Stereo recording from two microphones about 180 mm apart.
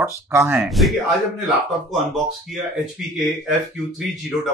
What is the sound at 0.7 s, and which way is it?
Speech, centre (ahead or behind).